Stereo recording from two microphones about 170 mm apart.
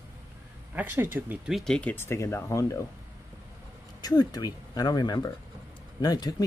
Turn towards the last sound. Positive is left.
turn(degrees=20)  # may be behind; listen again after turning